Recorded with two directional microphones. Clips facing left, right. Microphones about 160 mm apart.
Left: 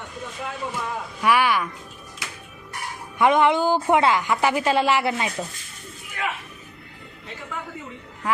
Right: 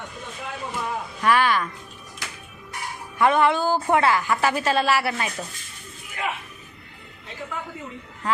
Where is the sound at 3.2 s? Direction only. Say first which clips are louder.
Left 1 dB; 15° left (ahead or behind).